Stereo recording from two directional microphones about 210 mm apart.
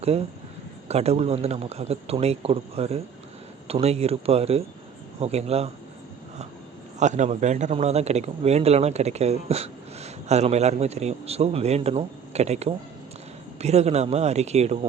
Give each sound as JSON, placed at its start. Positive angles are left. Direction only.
{"t": 0.9, "sound": "a man's voice", "side_deg": -30}
{"t": 7.0, "sound": "speech", "side_deg": -35}